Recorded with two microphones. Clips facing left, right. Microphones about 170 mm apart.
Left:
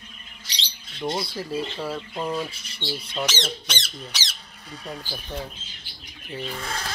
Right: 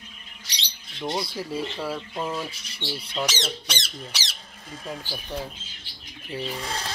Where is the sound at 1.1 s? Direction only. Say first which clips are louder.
Right 1 dB; centre (ahead or behind).